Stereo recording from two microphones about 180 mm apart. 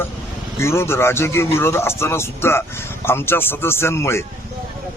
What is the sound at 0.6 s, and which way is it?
Speech, 15° left (ahead or behind).